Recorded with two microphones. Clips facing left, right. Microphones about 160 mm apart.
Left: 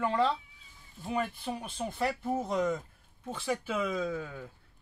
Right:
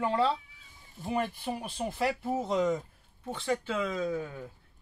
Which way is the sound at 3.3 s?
5° left (ahead or behind).